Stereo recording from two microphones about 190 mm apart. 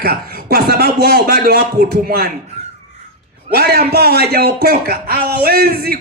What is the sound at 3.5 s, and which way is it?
Speech, 55° right (ahead or behind).